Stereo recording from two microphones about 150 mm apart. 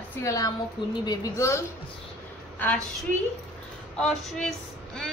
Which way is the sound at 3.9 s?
5° left (ahead or behind).